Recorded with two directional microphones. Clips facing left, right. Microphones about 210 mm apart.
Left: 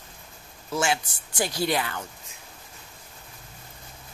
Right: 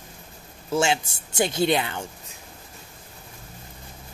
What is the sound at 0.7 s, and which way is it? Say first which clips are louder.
Speech: right 3 dB; 25° right (ahead or behind).